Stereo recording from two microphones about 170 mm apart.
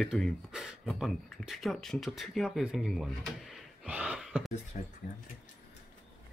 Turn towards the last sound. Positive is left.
turn(degrees=45)  # may be behind; listen again after turning